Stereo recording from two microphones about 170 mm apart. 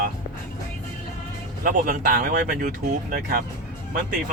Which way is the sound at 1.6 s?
55° right (ahead or behind).